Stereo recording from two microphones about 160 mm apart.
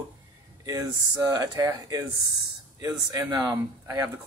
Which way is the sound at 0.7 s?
20° right (ahead or behind).